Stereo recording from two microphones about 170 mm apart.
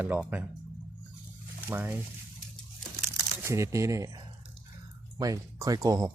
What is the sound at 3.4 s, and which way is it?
Speech, 15° right (ahead or behind).